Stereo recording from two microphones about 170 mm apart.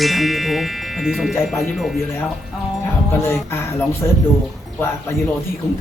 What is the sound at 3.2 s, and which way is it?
Chime, 15° left (ahead or behind).